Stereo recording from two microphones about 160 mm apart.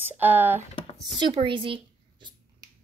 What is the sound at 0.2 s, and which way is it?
Speech, 10° right (ahead or behind).